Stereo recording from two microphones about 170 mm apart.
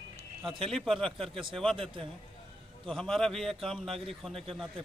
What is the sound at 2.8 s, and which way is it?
A man's voice, 5° left (ahead or behind).